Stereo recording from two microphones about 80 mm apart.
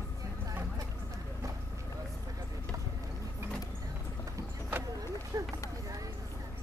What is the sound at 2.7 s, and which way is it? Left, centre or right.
Vehicle, right.